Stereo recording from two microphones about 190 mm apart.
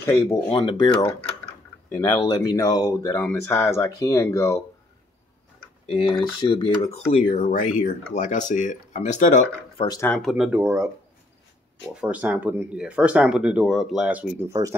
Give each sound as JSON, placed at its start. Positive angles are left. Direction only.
{"t": 0.0, "sound": "speech", "side_deg": 15}
{"t": 1.9, "sound": "speech", "side_deg": 15}
{"t": 5.9, "sound": "speech", "side_deg": 30}
{"t": 7.3, "sound": "speech", "side_deg": 40}
{"t": 9.8, "sound": "speech", "side_deg": 20}
{"t": 10.0, "sound": "speech", "side_deg": 0}
{"t": 11.9, "sound": "speech", "side_deg": -5}